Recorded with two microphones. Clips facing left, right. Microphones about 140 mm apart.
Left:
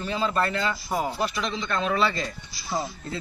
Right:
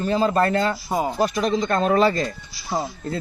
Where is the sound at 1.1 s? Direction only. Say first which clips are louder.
Right 8 dB; 40° right (ahead or behind).